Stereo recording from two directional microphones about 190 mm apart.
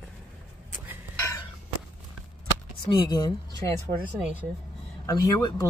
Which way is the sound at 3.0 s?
20° left (ahead or behind).